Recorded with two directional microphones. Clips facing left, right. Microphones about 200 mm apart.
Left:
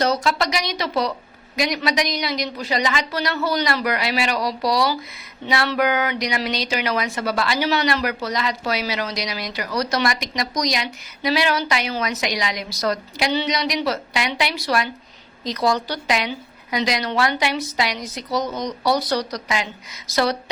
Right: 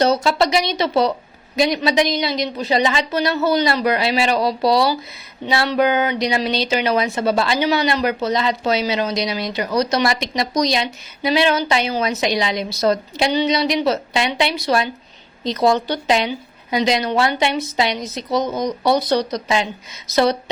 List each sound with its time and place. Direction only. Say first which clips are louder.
0.0 s speech: right 4 dB; 25° right (ahead or behind)